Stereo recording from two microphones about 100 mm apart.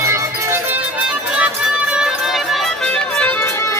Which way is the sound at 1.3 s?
10° right (ahead or behind).